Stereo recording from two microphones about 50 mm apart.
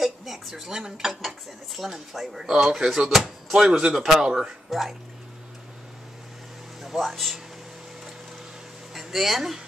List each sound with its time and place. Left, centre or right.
0.0 s dishes: centre
4.6 s speech: centre
6.8 s speech: centre
8.9 s speech: centre